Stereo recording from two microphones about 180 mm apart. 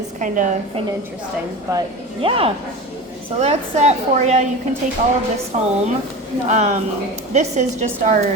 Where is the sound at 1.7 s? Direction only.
20° right (ahead or behind).